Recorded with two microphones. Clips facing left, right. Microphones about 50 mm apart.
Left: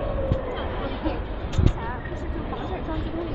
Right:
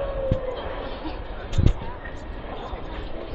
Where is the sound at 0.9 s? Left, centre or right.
Left.